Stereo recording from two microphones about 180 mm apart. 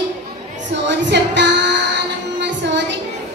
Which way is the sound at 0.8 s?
75° right (ahead or behind).